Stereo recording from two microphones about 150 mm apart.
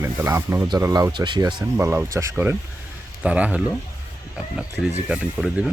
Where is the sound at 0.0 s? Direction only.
15° right (ahead or behind).